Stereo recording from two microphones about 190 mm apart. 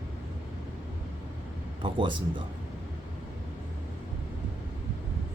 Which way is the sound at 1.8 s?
25° right (ahead or behind).